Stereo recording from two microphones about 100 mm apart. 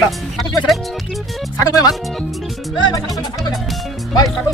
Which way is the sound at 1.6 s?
40° left (ahead or behind).